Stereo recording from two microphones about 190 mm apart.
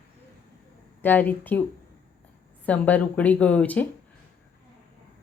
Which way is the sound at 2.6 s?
10° left (ahead or behind).